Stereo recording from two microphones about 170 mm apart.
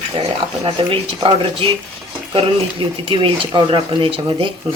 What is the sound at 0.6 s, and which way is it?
A woman's voice, 30° right (ahead or behind).